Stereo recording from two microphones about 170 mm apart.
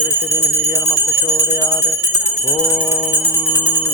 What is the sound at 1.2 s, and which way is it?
Speech, 5° left (ahead or behind).